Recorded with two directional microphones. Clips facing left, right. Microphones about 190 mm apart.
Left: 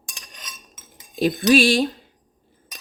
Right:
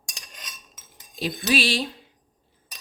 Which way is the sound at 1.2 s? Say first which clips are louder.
Left 8 dB; 50° left (ahead or behind).